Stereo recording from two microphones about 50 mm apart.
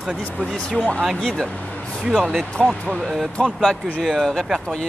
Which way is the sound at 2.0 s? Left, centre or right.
Centre.